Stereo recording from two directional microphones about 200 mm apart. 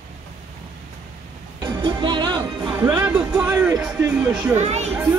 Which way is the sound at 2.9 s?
10° right (ahead or behind).